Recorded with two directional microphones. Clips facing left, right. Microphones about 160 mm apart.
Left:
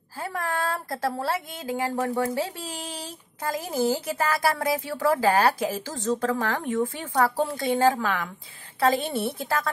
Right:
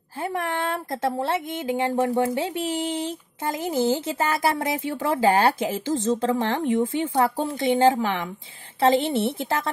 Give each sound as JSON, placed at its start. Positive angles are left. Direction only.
{"t": 0.2, "sound": "speech", "side_deg": -20}